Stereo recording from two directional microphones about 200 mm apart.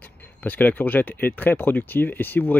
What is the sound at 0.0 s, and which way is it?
Speech, 10° left (ahead or behind).